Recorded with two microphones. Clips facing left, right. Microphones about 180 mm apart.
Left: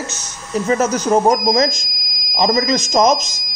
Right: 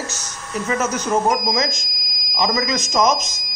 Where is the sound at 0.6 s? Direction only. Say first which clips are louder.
Left 5 dB; 35° left (ahead or behind).